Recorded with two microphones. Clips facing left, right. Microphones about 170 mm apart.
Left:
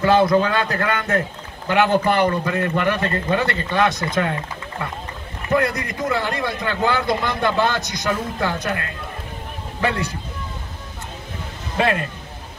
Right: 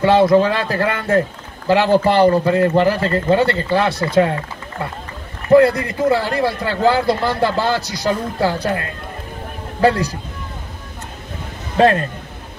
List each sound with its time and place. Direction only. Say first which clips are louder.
0.0 s a man's voice: right 4 dB; 25° right (ahead or behind)
5.5 s a man's voice: right 9 dB; 30° right (ahead or behind)
11.7 s a man's voice: right 7 dB; 40° right (ahead or behind)